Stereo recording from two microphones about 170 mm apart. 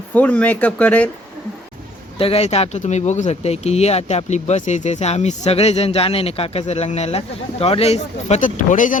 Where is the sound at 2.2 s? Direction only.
35° left (ahead or behind).